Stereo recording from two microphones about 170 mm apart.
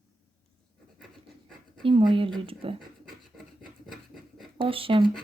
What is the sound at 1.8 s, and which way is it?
Speech, 30° right (ahead or behind).